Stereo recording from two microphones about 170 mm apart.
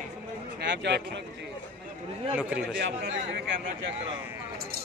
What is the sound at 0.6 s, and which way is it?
Speech, 80° right.